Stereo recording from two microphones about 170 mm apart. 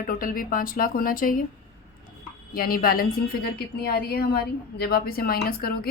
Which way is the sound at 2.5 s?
60° left (ahead or behind).